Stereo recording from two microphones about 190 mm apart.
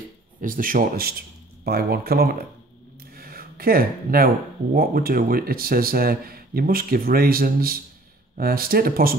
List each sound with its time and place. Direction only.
0.4 s speech: 45° right (ahead or behind)
3.2 s a sound: 50° right (ahead or behind)
4.7 s speech: 50° right (ahead or behind)